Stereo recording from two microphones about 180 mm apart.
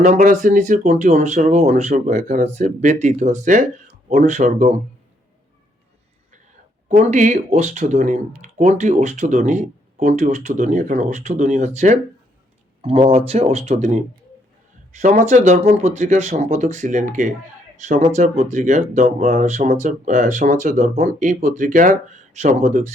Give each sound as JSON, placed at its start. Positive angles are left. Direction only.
{"t": 0.0, "sound": "speech", "side_deg": -50}
{"t": 6.8, "sound": "speech", "side_deg": -40}